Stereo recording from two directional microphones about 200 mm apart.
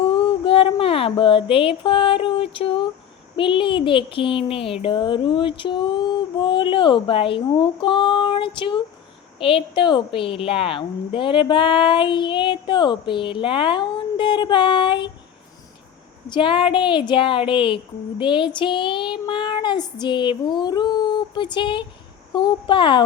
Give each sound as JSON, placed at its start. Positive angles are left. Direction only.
{"t": 0.1, "sound": "a sound", "side_deg": 25}
{"t": 3.3, "sound": "a woman's voice", "side_deg": 25}
{"t": 16.3, "sound": "a woman's voice", "side_deg": 25}